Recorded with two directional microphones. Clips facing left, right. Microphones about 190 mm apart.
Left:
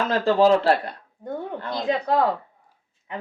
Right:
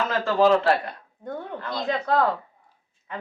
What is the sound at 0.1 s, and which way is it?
Speech, 35° left (ahead or behind).